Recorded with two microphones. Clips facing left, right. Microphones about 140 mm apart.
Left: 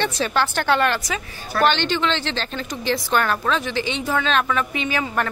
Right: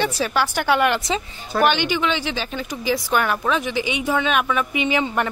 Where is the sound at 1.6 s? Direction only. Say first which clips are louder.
Even; 10° right (ahead or behind).